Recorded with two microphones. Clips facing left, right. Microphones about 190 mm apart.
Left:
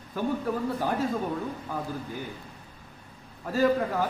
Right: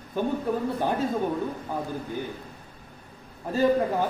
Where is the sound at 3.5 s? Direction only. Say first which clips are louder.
Right 2 dB; 20° right (ahead or behind).